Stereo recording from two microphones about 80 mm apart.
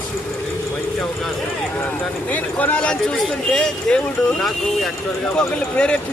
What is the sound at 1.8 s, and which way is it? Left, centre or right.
Speech, left.